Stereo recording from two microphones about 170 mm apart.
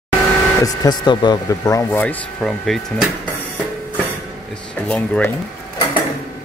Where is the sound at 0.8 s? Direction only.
25° left (ahead or behind).